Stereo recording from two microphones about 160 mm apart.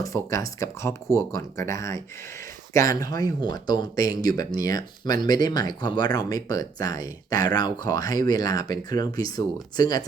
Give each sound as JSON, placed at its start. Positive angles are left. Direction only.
{"t": 0.0, "sound": "speech", "side_deg": 20}